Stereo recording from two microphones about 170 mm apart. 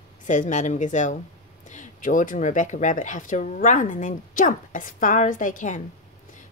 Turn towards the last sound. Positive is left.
turn(degrees=50)  # may be behind; listen again after turning